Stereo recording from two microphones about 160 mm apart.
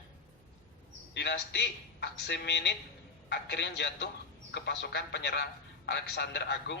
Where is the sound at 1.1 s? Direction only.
90° left.